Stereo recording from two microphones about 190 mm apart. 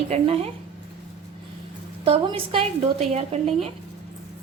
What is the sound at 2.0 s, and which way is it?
A woman's voice, 30° right (ahead or behind).